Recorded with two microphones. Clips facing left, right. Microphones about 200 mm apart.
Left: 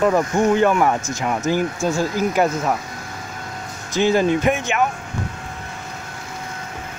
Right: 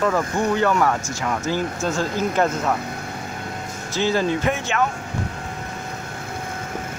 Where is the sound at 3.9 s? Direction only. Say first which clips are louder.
Left 4 dB; 15° left (ahead or behind).